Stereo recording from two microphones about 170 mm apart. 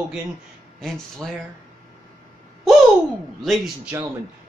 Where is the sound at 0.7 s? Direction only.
Centre (ahead or behind).